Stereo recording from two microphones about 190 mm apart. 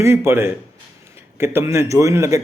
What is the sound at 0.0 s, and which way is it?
A man's voice, 15° right (ahead or behind).